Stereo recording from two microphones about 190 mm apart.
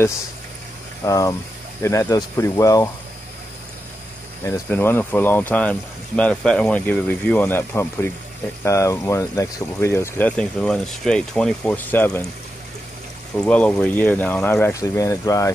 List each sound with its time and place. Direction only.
1.0 s speech: 15° left (ahead or behind)
4.5 s speech: 10° left (ahead or behind)
13.4 s speech: 5° left (ahead or behind)